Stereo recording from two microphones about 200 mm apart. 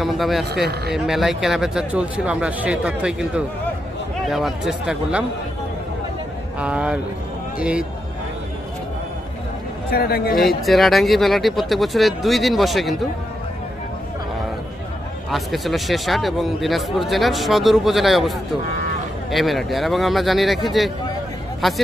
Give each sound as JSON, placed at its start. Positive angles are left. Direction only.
{"t": 0.0, "sound": "speech", "side_deg": 0}
{"t": 6.6, "sound": "a man's voice", "side_deg": -5}
{"t": 9.8, "sound": "a man's voice", "side_deg": 50}
{"t": 10.6, "sound": "speech", "side_deg": 0}
{"t": 15.3, "sound": "speech", "side_deg": 0}
{"t": 19.3, "sound": "speech", "side_deg": 0}